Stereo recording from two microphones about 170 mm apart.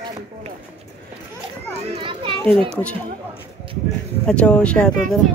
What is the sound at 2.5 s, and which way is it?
Speech, 30° right (ahead or behind).